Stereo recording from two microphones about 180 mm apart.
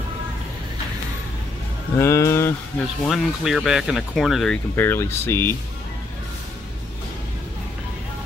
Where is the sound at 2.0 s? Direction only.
15° left (ahead or behind).